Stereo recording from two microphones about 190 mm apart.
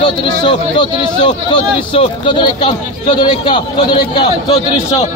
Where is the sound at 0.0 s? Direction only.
25° left (ahead or behind).